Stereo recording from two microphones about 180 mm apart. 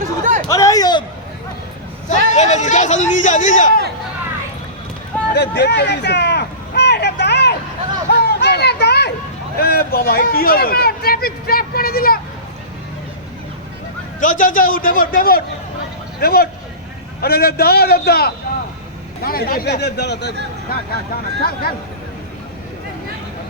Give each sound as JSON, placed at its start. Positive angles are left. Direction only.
{"t": 0.0, "sound": "chatter", "side_deg": -45}
{"t": 0.4, "sound": "a sound", "side_deg": 20}
{"t": 2.0, "sound": "a man's voice", "side_deg": 40}
{"t": 5.3, "sound": "a sound", "side_deg": 70}
{"t": 9.6, "sound": "speech", "side_deg": 60}
{"t": 14.2, "sound": "a man's voice", "side_deg": 50}
{"t": 20.7, "sound": "speech", "side_deg": 55}